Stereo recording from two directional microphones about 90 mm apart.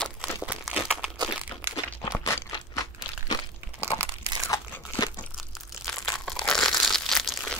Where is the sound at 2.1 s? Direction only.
25° left (ahead or behind).